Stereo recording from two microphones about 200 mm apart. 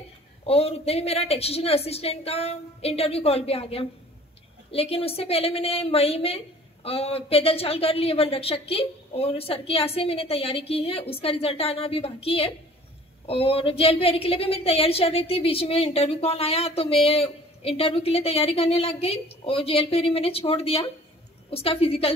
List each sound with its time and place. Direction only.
0.5 s a woman's voice: 30° left (ahead or behind)